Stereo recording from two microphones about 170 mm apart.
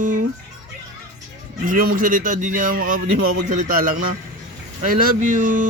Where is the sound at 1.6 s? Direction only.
55° right (ahead or behind).